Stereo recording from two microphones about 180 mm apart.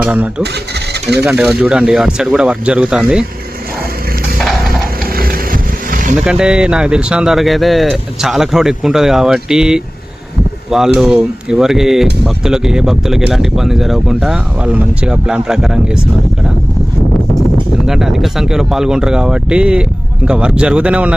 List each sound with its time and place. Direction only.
0.0 s speech: 5° right (ahead or behind)
5.1 s vehicle: 55° right (ahead or behind)
6.1 s speech: 5° right (ahead or behind)
17.8 s speech: 5° right (ahead or behind)